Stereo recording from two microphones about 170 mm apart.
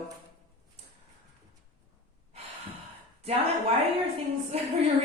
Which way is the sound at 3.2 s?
35° right (ahead or behind).